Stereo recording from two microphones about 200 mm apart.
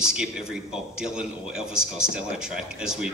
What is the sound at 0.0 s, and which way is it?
Speech, 5° right (ahead or behind).